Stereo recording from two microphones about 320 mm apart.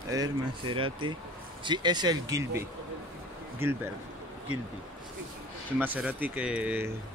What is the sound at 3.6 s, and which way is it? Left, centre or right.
Speech, centre.